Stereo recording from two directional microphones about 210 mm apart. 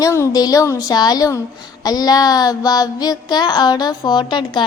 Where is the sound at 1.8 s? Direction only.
20° left (ahead or behind).